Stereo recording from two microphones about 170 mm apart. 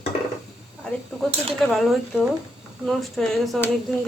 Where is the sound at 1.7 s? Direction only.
Centre (ahead or behind).